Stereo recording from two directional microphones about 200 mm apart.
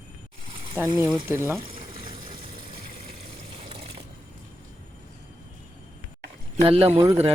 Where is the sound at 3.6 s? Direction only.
30° right (ahead or behind).